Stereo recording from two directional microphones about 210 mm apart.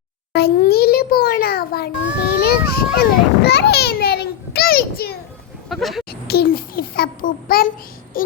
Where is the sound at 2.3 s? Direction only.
50° left (ahead or behind).